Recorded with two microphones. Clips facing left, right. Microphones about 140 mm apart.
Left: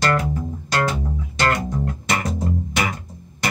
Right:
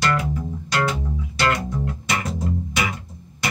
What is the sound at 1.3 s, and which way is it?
Music, 45° left (ahead or behind).